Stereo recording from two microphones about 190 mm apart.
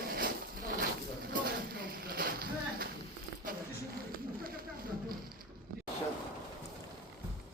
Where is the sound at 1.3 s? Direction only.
50° right (ahead or behind).